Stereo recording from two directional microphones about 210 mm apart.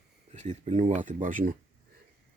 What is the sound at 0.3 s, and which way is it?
Speech, 30° right (ahead or behind).